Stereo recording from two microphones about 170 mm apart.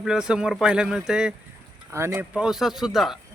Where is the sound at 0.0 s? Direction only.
5° right (ahead or behind).